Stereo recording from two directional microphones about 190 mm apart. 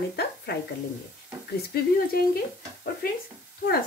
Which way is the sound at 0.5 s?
60° left (ahead or behind).